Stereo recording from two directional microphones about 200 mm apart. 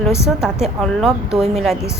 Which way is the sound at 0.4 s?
Centre (ahead or behind).